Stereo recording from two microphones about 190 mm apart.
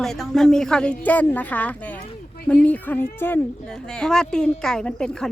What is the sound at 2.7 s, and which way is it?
Speech, 10° left (ahead or behind).